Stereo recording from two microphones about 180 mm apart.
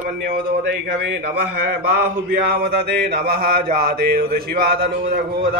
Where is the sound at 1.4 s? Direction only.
65° right (ahead or behind).